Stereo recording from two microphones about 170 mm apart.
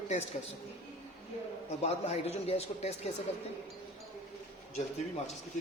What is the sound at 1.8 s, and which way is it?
A man's voice, 35° left (ahead or behind).